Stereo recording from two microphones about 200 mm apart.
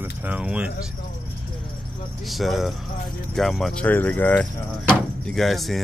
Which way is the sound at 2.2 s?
Centre (ahead or behind).